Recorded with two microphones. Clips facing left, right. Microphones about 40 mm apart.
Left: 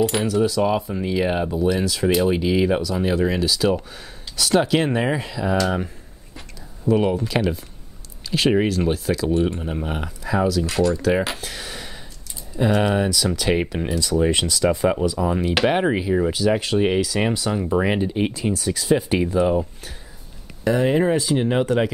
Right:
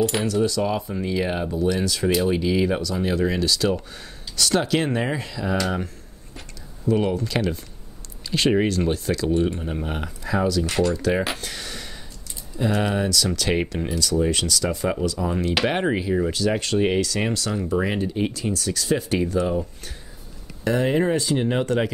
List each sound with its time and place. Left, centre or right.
0.0 s speech: centre
6.9 s speech: centre
11.4 s a sound: centre
12.5 s speech: centre
20.6 s speech: centre